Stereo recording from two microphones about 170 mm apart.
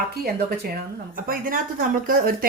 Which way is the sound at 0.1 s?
70° right (ahead or behind).